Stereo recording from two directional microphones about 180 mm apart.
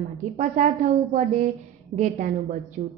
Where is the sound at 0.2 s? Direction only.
40° right (ahead or behind).